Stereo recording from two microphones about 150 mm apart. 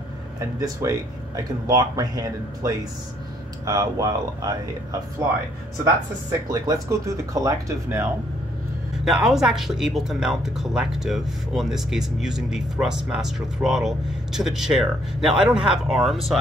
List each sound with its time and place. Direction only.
0.6 s speech: 20° right (ahead or behind)
6.5 s speech: 20° right (ahead or behind)
9.0 s speech: 5° right (ahead or behind)